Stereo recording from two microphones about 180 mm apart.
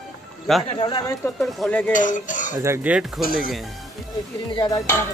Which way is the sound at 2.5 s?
10° right (ahead or behind).